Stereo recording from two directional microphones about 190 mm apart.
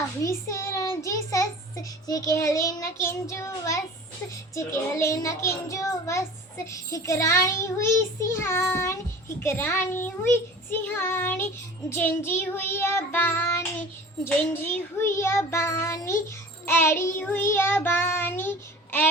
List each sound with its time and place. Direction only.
0.2 s child singing: 15° left (ahead or behind)